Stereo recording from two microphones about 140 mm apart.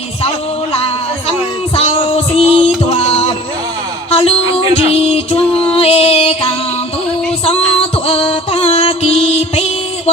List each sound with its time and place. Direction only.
1.7 s music: 45° left (ahead or behind)